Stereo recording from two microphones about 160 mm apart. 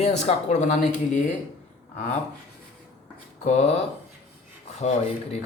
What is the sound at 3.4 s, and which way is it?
Speech, 45° left (ahead or behind).